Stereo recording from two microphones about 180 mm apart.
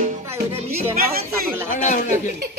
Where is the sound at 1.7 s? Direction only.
45° left (ahead or behind).